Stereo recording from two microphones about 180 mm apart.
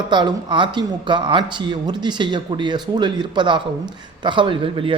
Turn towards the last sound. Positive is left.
turn(degrees=-30)  # may be behind; listen again after turning